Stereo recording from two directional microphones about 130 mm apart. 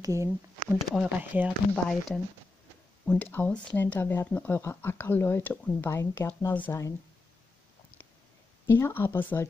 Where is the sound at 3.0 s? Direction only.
15° left (ahead or behind).